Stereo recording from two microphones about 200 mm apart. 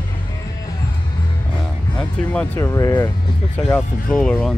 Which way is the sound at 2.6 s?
15° left (ahead or behind).